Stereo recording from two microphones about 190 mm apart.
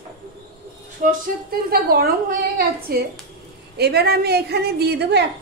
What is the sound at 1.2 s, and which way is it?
A woman's voice, 50° right (ahead or behind).